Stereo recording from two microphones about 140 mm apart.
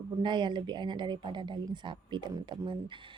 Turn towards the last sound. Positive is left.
turn(degrees=-35)  # may be behind; listen again after turning